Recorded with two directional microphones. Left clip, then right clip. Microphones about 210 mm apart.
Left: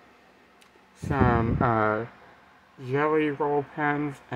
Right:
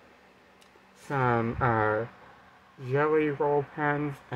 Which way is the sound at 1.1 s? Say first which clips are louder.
Left 2 dB; 15° left (ahead or behind).